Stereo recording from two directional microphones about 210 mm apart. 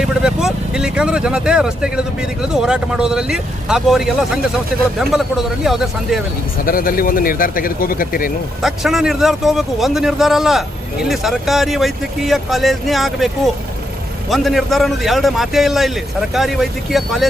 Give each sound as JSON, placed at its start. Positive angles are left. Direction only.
{"t": 0.0, "sound": "speech", "side_deg": -5}
{"t": 6.7, "sound": "speech", "side_deg": 45}
{"t": 8.6, "sound": "speech", "side_deg": 0}